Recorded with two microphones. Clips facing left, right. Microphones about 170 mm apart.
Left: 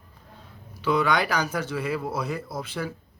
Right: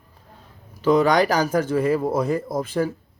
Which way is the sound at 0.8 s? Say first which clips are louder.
Right 6 dB; 40° right (ahead or behind).